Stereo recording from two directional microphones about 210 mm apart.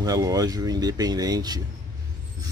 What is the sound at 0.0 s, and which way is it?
Speech, 15° right (ahead or behind).